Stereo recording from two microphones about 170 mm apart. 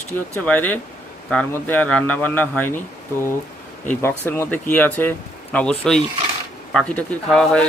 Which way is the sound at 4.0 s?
15° left (ahead or behind).